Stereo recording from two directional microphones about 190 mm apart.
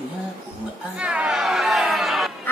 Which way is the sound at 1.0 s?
5° right (ahead or behind).